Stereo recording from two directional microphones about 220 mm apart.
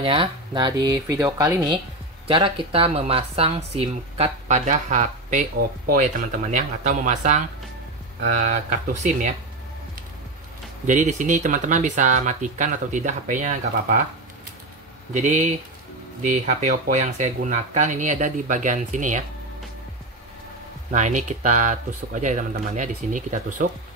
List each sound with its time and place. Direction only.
0.0 s speech: 25° right (ahead or behind)
10.9 s speech: 35° right (ahead or behind)
15.1 s speech: 30° right (ahead or behind)
20.9 s speech: 35° right (ahead or behind)